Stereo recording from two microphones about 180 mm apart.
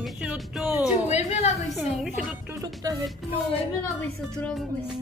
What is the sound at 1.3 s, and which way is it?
Speech, 40° left (ahead or behind).